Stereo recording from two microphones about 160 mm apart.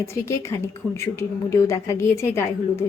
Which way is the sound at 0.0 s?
15° left (ahead or behind).